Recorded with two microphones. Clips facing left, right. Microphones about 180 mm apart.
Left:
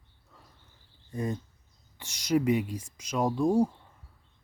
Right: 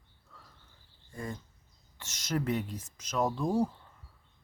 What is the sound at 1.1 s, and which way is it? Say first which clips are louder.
Speech: left 7 dB; 20° left (ahead or behind).